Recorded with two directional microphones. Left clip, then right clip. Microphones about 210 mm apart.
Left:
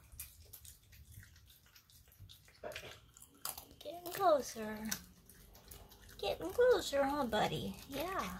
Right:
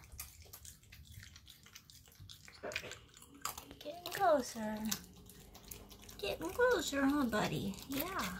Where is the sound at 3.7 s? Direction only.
20° left (ahead or behind).